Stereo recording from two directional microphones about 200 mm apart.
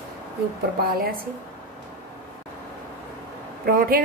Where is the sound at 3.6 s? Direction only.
45° right (ahead or behind).